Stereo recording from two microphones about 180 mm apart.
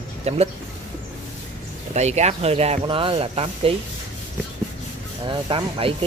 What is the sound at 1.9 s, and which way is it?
Speech, 40° right (ahead or behind).